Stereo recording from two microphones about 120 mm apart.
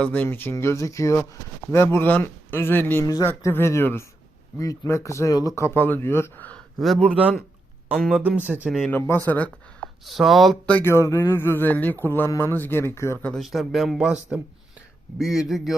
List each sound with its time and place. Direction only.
0.0 s speech: 10° left (ahead or behind)
3.0 s speech: 30° left (ahead or behind)
3.2 s speech: 20° left (ahead or behind)
6.7 s speech: centre (ahead or behind)
7.2 s speech: 10° right (ahead or behind)
8.9 s speech: 15° left (ahead or behind)
10.1 s speech: centre (ahead or behind)
10.8 s speech: 20° left (ahead or behind)
13.1 s speech: 10° left (ahead or behind)
13.4 s speech: centre (ahead or behind)